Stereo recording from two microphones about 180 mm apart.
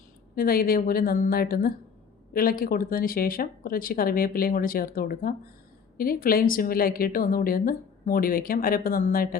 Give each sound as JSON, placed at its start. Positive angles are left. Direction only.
{"t": 0.3, "sound": "a woman's voice", "side_deg": 55}